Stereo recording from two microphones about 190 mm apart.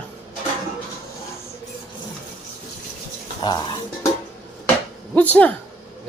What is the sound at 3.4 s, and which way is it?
Speech, 25° left (ahead or behind).